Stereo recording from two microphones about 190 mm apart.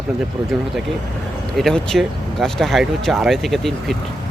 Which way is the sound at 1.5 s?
Centre (ahead or behind).